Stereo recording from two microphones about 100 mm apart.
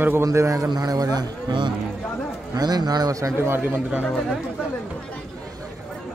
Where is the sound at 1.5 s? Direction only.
50° right (ahead or behind).